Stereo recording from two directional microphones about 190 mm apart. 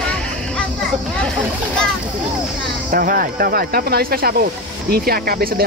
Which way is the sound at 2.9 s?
50° right (ahead or behind).